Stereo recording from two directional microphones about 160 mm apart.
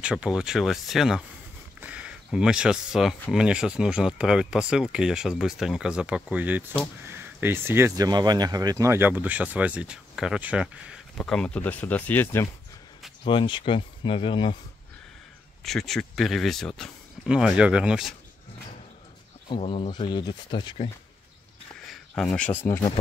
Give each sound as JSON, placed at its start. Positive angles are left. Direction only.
{"t": 0.0, "sound": "speech", "side_deg": -5}
{"t": 11.1, "sound": "speech", "side_deg": 5}
{"t": 13.2, "sound": "speech", "side_deg": 30}
{"t": 15.6, "sound": "speech", "side_deg": 0}
{"t": 19.5, "sound": "speech", "side_deg": 35}
{"t": 21.9, "sound": "speech", "side_deg": 0}